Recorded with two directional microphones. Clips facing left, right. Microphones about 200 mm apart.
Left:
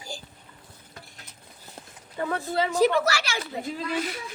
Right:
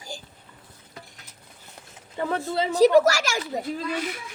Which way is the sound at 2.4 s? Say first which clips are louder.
Right 3 dB; 30° right (ahead or behind).